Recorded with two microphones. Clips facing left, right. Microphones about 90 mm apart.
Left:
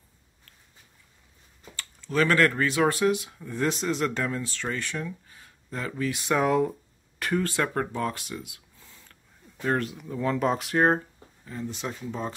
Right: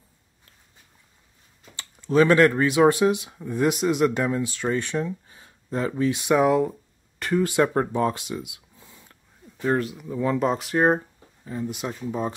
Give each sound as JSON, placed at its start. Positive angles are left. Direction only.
{"t": 1.8, "sound": "speech", "side_deg": -20}
{"t": 6.3, "sound": "speech", "side_deg": -5}
{"t": 7.3, "sound": "speech", "side_deg": -15}
{"t": 9.6, "sound": "speech", "side_deg": -5}
{"t": 11.4, "sound": "speech", "side_deg": -15}